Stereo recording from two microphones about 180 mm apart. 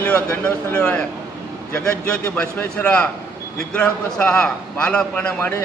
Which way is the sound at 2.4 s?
5° left (ahead or behind).